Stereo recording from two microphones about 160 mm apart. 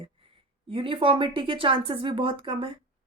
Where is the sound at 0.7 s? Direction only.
35° right (ahead or behind).